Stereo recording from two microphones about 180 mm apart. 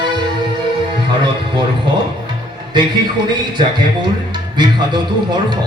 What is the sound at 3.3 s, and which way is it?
A man's voice, 25° right (ahead or behind).